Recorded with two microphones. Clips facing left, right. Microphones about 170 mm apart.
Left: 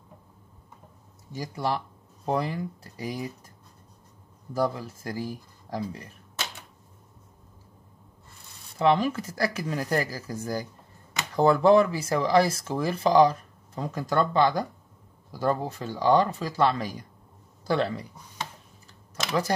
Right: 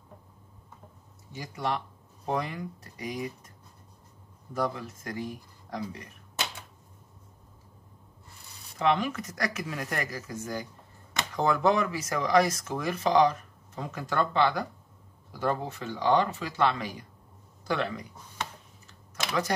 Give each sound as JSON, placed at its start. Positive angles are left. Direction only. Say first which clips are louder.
{"t": 1.3, "sound": "speech", "louder": "left 3 dB", "side_deg": 35}
{"t": 4.6, "sound": "speech", "louder": "left 4 dB", "side_deg": 30}
{"t": 8.7, "sound": "speech", "louder": "left 4 dB", "side_deg": 30}
{"t": 19.1, "sound": "typing", "louder": "left 3 dB", "side_deg": 30}